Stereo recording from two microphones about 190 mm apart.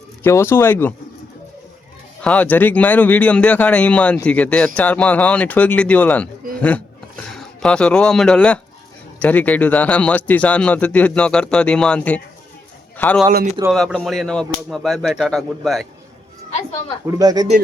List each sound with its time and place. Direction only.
0.2 s speech: 15° left (ahead or behind)
2.2 s speech: 10° left (ahead or behind)
17.1 s speech: 20° right (ahead or behind)